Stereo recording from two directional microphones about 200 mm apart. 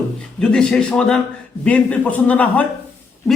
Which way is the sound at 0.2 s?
5° left (ahead or behind).